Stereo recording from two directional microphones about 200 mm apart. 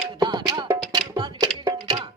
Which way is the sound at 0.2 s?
20° right (ahead or behind).